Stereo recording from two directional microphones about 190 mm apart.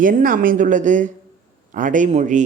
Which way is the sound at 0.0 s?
45° right (ahead or behind).